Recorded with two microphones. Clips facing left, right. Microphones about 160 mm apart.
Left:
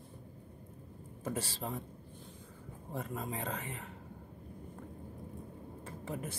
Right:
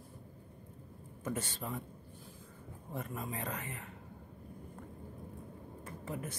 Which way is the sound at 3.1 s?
30° left (ahead or behind).